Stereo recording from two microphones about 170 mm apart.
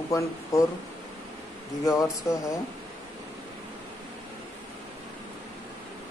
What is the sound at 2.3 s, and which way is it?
Speech, 15° left (ahead or behind).